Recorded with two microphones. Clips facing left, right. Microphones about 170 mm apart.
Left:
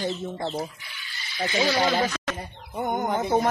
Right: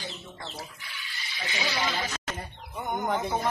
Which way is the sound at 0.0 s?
45° left (ahead or behind).